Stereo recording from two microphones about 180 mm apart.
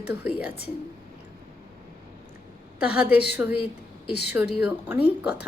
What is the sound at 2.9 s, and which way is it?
Speech, 5° right (ahead or behind).